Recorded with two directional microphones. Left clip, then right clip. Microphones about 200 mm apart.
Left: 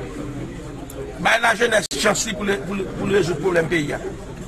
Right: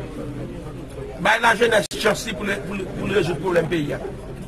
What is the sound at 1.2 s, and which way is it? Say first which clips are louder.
A man's voice: even; centre (ahead or behind).